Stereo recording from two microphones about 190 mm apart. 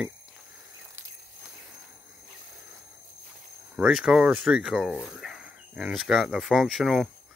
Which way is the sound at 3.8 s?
5° right (ahead or behind).